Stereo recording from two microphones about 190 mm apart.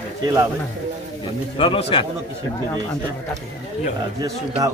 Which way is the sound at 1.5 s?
25° left (ahead or behind).